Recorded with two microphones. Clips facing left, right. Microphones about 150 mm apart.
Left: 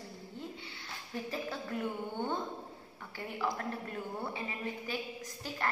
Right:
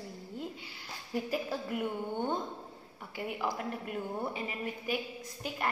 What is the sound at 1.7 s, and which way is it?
A woman's voice, 15° right (ahead or behind).